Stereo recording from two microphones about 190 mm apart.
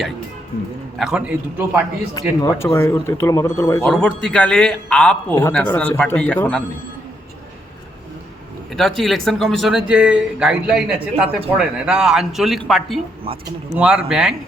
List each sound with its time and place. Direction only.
0.9 s a man's voice: 5° right (ahead or behind)
2.1 s a man's voice: 15° left (ahead or behind)
8.7 s a man's voice: centre (ahead or behind)
13.3 s speech: 30° right (ahead or behind)
13.7 s a man's voice: 5° right (ahead or behind)